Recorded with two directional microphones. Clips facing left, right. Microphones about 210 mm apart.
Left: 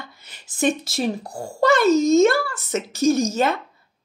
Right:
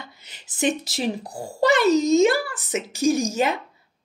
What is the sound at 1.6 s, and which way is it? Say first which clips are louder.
Speech: left 2 dB; 15° right (ahead or behind).